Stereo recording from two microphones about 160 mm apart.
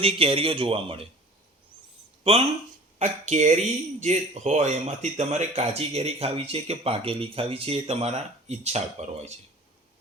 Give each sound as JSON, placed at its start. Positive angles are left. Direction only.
{"t": 0.0, "sound": "speech", "side_deg": -35}
{"t": 2.2, "sound": "speech", "side_deg": -40}